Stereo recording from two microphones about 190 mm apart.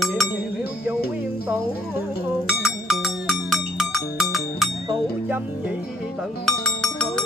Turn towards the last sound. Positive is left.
turn(degrees=5)  # may be behind; listen again after turning